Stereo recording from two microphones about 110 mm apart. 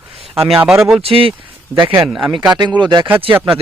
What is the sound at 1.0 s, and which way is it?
Speech, 60° right (ahead or behind).